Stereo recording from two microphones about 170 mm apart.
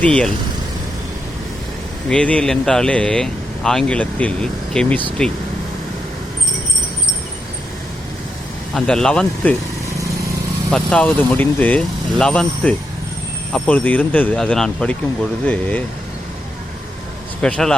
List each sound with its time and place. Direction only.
0.0 s speech: 5° left (ahead or behind)
2.0 s speech: 5° left (ahead or behind)
8.7 s speech: 5° left (ahead or behind)
10.7 s speech: 5° left (ahead or behind)
17.4 s speech: 5° left (ahead or behind)